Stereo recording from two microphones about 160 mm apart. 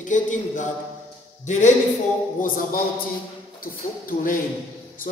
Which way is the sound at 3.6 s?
60° left (ahead or behind).